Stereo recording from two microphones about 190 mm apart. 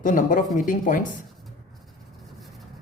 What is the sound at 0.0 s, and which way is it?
Speech, 45° left (ahead or behind).